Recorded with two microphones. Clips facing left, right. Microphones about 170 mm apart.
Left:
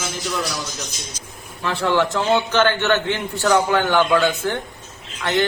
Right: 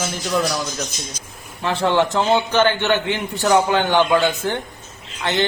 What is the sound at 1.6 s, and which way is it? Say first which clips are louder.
A man's voice: right 1 dB; 20° right (ahead or behind).